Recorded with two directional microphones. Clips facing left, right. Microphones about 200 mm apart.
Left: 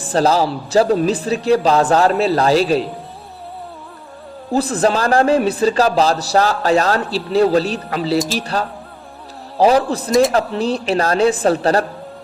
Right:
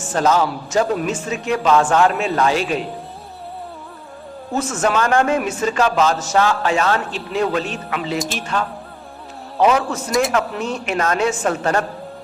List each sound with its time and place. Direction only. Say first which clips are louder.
0.0 s a man's voice: left 2 dB; 35° left (ahead or behind)
4.5 s a man's voice: left 3 dB; 35° left (ahead or behind)